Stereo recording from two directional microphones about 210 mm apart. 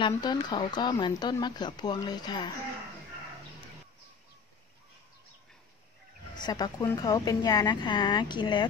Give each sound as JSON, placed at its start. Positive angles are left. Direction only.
{"t": 0.0, "sound": "speech", "side_deg": 20}
{"t": 6.3, "sound": "speech", "side_deg": 20}